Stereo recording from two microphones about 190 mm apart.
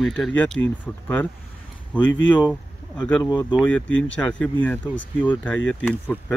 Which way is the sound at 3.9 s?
85° left.